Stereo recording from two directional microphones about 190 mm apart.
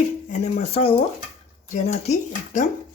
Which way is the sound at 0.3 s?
40° left (ahead or behind).